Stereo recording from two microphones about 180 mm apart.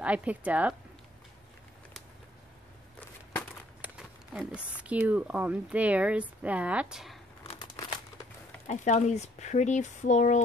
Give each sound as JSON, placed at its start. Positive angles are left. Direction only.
{"t": 0.0, "sound": "speech", "side_deg": -5}
{"t": 3.8, "sound": "a sound", "side_deg": -5}
{"t": 4.9, "sound": "speech", "side_deg": -10}
{"t": 8.6, "sound": "speech", "side_deg": 40}